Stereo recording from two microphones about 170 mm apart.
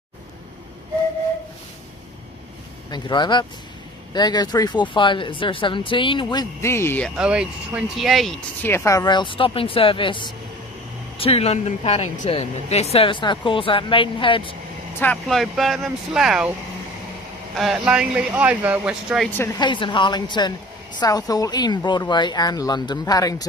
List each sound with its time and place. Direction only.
2.9 s a woman's voice: 25° left (ahead or behind)
6.6 s speech: 15° left (ahead or behind)
7.2 s speech: 5° right (ahead or behind)
8.6 s a woman's voice: 15° left (ahead or behind)
15.0 s speech: 5° left (ahead or behind)
17.6 s speech: 5° right (ahead or behind)
19.6 s a woman's voice: 30° left (ahead or behind)